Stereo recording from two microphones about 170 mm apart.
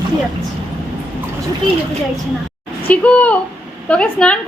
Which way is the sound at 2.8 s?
10° left (ahead or behind).